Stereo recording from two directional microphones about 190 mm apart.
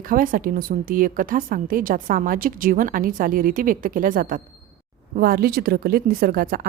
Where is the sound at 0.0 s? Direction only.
45° right (ahead or behind).